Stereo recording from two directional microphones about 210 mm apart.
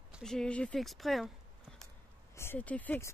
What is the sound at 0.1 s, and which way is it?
Speech, centre (ahead or behind).